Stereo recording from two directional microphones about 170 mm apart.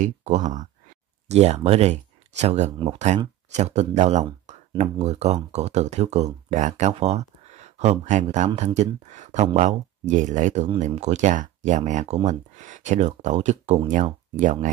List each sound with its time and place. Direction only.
0.0 s speech: 45° right (ahead or behind)
4.5 s a sound: 40° right (ahead or behind)
4.9 s speech: 40° right (ahead or behind)